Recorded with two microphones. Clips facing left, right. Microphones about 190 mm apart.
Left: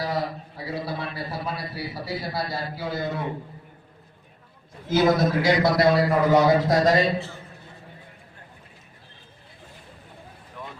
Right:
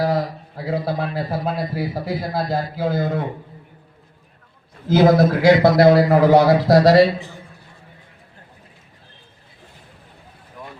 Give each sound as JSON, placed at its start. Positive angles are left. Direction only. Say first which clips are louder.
{"t": 0.0, "sound": "a man's voice", "louder": "right 7 dB", "side_deg": -55}
{"t": 4.9, "sound": "a man's voice", "louder": "right 5 dB", "side_deg": -60}